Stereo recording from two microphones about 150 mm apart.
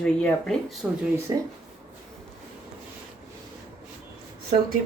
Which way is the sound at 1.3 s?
25° right (ahead or behind).